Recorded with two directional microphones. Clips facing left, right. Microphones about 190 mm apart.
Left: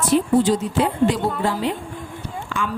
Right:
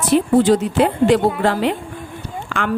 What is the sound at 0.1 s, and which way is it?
Speech, 65° right (ahead or behind).